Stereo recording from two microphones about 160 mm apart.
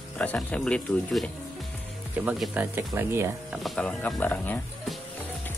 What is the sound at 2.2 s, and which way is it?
Speech, 5° right (ahead or behind).